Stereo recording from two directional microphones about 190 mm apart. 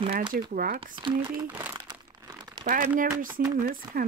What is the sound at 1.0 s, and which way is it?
Speech, 25° right (ahead or behind).